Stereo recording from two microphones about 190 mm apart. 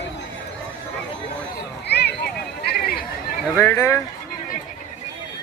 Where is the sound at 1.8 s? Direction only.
65° left (ahead or behind).